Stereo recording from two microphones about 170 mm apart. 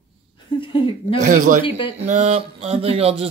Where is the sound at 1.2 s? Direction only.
50° right (ahead or behind).